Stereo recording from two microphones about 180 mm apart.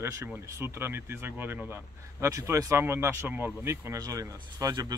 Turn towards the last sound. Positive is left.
turn(degrees=-20)  # may be behind; listen again after turning